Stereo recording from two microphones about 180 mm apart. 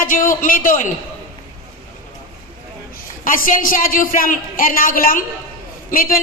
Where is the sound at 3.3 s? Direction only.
50° left (ahead or behind).